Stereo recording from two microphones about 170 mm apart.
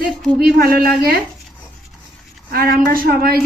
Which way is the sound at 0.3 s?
65° right (ahead or behind).